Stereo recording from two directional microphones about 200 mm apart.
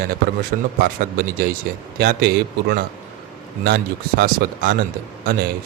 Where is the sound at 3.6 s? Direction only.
50° right (ahead or behind).